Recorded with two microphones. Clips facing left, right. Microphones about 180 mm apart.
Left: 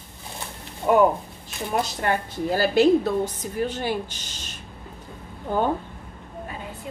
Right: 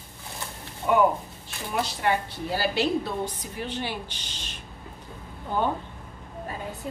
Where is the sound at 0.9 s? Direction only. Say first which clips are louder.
Left 4 dB; 35° left (ahead or behind).